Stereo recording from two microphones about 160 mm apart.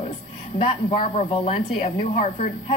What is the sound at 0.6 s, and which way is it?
A woman's voice, 40° left (ahead or behind).